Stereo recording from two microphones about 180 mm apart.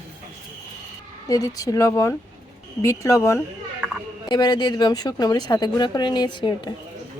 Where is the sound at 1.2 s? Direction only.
20° left (ahead or behind).